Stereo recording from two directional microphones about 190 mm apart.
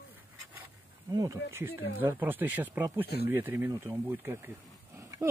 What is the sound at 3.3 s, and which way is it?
Speech, 10° right (ahead or behind).